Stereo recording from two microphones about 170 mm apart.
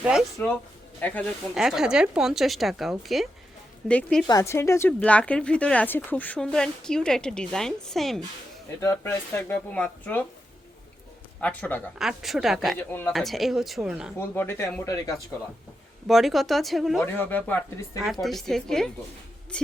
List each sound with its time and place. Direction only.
0.0 s speech: 5° right (ahead or behind)
1.0 s a woman's voice: 10° left (ahead or behind)
1.5 s speech: 5° right (ahead or behind)
4.3 s a woman's voice: 20° left (ahead or behind); by 8.2 s centre (ahead or behind)
8.8 s a woman's voice: 15° left (ahead or behind)
11.3 s speech: 10° left (ahead or behind)
12.9 s a woman's voice: 10° left (ahead or behind)
13.1 s speech: centre (ahead or behind)
14.2 s a woman's voice: 15° left (ahead or behind)
16.0 s speech: centre (ahead or behind)
17.1 s a woman's voice: 10° left (ahead or behind)
18.0 s a woman's voice: centre (ahead or behind)